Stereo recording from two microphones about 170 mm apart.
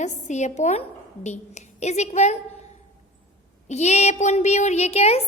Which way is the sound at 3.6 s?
40° left (ahead or behind).